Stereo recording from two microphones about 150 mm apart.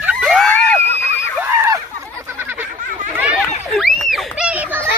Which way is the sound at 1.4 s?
20° right (ahead or behind).